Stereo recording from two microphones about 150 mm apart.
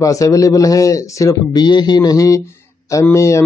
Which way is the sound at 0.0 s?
20° left (ahead or behind).